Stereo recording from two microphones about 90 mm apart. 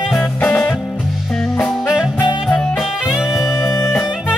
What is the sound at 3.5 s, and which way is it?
Music, 30° left (ahead or behind).